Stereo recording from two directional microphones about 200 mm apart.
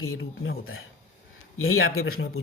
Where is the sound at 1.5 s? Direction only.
90° left.